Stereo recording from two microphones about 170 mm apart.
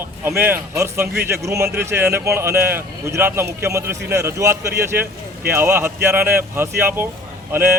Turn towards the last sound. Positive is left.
turn(degrees=-10)  # may be behind; listen again after turning